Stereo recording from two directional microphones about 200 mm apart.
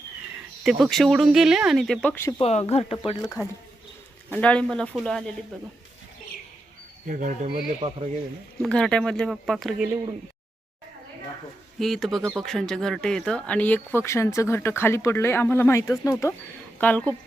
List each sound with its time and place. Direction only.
0.6 s speech: centre (ahead or behind)
2.4 s speech: 30° left (ahead or behind)
4.3 s speech: 5° left (ahead or behind)
7.1 s speech: 40° right (ahead or behind)
7.8 s speech: 25° right (ahead or behind)
8.6 s speech: 5° left (ahead or behind)
11.8 s speech: centre (ahead or behind)